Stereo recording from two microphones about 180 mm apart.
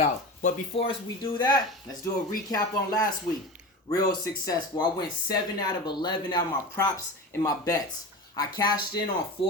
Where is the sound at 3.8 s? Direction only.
20° left (ahead or behind).